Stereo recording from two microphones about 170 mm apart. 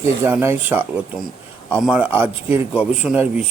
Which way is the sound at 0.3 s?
10° right (ahead or behind).